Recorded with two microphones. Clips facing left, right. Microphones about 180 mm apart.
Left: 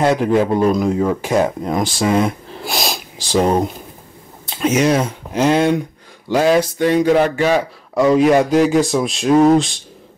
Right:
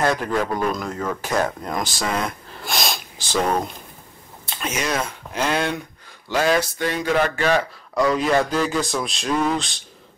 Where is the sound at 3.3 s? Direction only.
25° left (ahead or behind).